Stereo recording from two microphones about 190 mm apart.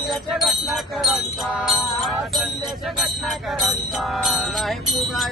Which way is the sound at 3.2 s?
Centre (ahead or behind).